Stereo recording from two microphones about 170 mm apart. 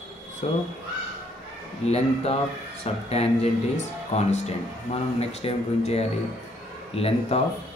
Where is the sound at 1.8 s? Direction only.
40° left (ahead or behind).